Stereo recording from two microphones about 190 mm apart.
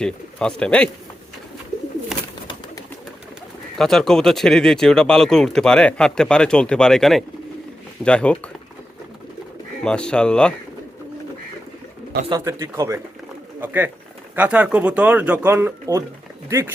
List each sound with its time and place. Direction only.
0.0 s speech: 5° left (ahead or behind)
3.8 s speech: centre (ahead or behind)
9.8 s speech: 5° left (ahead or behind)
12.3 s speech: 15° right (ahead or behind)